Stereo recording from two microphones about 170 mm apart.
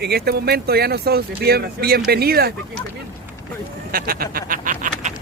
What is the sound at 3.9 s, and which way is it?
Speech, 60° right (ahead or behind).